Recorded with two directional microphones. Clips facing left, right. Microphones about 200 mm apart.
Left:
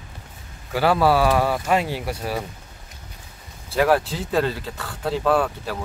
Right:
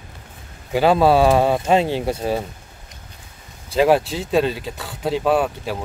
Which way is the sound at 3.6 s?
20° right (ahead or behind).